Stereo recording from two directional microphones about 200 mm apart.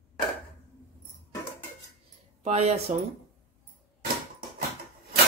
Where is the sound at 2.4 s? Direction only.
30° right (ahead or behind).